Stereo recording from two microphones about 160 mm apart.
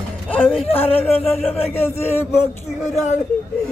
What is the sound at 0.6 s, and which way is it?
Speech, 40° left (ahead or behind).